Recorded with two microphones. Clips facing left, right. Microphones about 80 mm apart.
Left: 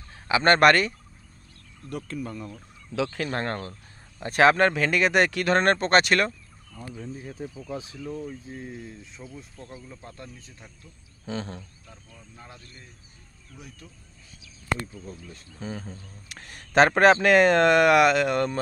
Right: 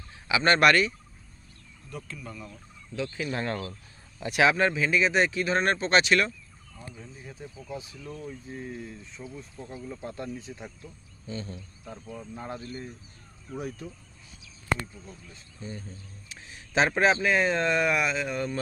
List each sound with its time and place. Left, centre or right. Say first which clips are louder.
0.3 s speech: left 3 dB; left
1.9 s speech: left 7 dB; left
2.9 s speech: left 5 dB; left
3.3 s speech: left 1 dB; left
8.0 s speech: left 5 dB; left
8.5 s speech: even; centre
9.2 s speech: right 2 dB; centre
10.0 s speech: right 7 dB; right
11.2 s speech: left 4 dB; left
12.5 s speech: right 11 dB; right
15.3 s speech: left 4 dB; left
16.3 s speech: left 3 dB; left